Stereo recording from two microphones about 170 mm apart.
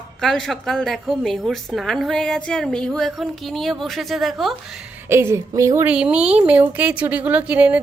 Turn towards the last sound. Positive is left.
turn(degrees=-10)  # may be behind; listen again after turning